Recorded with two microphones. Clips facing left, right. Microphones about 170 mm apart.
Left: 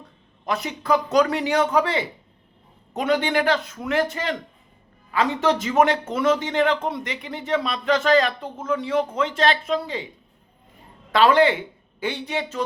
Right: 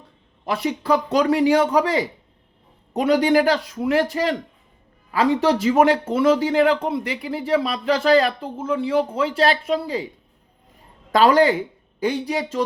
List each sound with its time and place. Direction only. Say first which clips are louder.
0.4 s speech: right 3 dB; 30° right (ahead or behind)
11.1 s a woman's voice: right 2 dB; 40° right (ahead or behind)